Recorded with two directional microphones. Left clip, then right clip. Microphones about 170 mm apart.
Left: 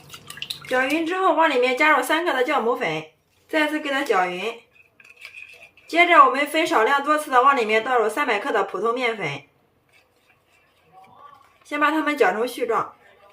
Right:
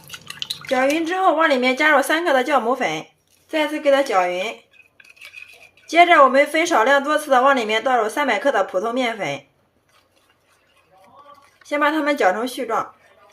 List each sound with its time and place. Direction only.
0.7 s speech: 25° right (ahead or behind); by 3.0 s 40° right (ahead or behind)
3.5 s a woman's voice: 25° right (ahead or behind)
5.9 s speech: 35° right (ahead or behind)
11.7 s a woman's voice: 30° right (ahead or behind)